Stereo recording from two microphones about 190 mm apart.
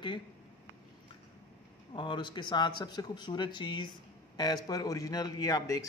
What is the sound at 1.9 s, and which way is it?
Speech, 25° left (ahead or behind).